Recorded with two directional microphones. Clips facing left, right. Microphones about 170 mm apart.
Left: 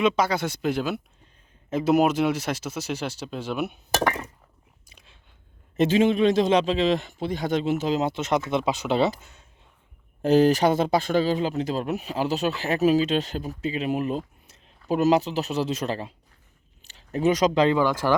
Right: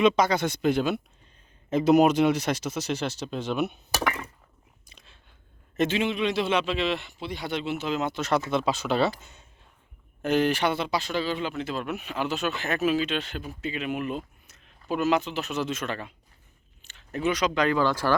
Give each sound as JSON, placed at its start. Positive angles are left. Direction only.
{"t": 0.0, "sound": "speech", "side_deg": 5}
{"t": 4.9, "sound": "whispering", "side_deg": 10}
{"t": 5.7, "sound": "a man's voice", "side_deg": 30}
{"t": 6.0, "sound": "a man's voice", "side_deg": 45}
{"t": 8.2, "sound": "speech", "side_deg": 20}
{"t": 10.2, "sound": "speech", "side_deg": 35}
{"t": 16.8, "sound": "a sound", "side_deg": 35}
{"t": 17.6, "sound": "speech", "side_deg": 20}